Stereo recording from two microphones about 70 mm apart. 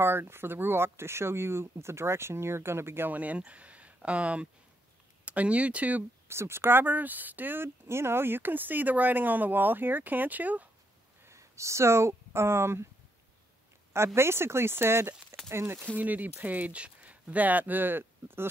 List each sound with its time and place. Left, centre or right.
0.0 s speech: right
6.2 s speech: right
11.2 s speech: right
13.9 s speech: right
16.0 s speech: right